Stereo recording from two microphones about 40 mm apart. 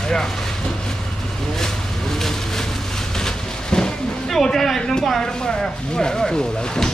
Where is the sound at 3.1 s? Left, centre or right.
Centre.